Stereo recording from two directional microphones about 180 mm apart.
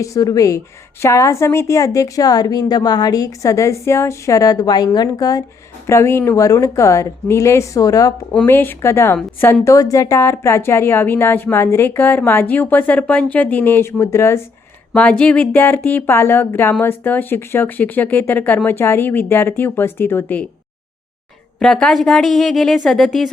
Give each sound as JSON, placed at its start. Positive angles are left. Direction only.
{"t": 0.0, "sound": "a woman's voice", "side_deg": 20}
{"t": 8.3, "sound": "speech", "side_deg": 10}
{"t": 21.6, "sound": "a woman's voice", "side_deg": 5}